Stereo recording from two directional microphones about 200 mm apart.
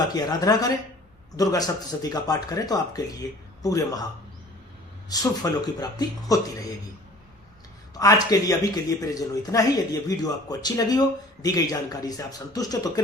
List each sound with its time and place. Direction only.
0.1 s speech: 20° left (ahead or behind)
5.0 s speech: 20° left (ahead or behind)
7.9 s speech: 15° left (ahead or behind)